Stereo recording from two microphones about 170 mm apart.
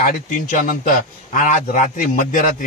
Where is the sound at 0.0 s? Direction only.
50° left (ahead or behind).